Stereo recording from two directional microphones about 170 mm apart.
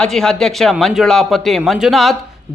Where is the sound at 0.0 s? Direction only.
5° left (ahead or behind).